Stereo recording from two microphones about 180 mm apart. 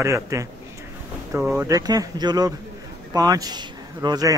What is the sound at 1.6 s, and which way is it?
A man's voice, 20° right (ahead or behind).